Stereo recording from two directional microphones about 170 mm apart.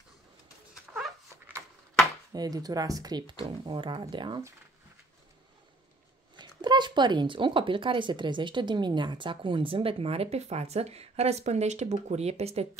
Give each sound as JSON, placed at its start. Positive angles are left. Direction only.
{"t": 2.3, "sound": "speech", "side_deg": -20}
{"t": 6.3, "sound": "speech", "side_deg": -25}